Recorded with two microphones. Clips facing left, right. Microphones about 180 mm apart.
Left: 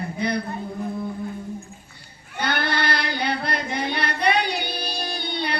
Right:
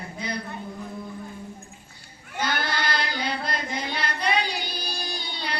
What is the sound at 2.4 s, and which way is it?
Child singing, 60° left (ahead or behind).